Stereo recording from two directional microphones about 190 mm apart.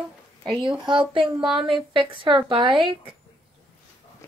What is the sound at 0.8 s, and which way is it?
Speech, 25° right (ahead or behind).